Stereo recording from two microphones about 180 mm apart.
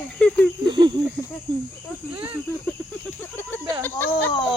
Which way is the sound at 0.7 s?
25° right (ahead or behind).